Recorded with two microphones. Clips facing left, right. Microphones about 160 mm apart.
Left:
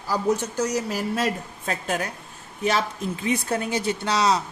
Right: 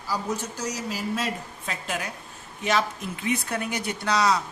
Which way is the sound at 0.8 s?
50° left (ahead or behind).